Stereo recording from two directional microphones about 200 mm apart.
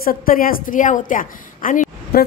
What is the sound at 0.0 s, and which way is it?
A woman's voice, 45° left (ahead or behind).